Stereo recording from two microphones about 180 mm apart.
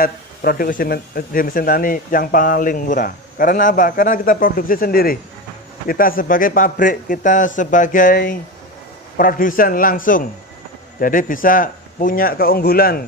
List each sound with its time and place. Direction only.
0.0 s speech: 55° left (ahead or behind)